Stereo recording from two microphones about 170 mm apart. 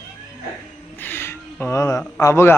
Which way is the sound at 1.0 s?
10° left (ahead or behind).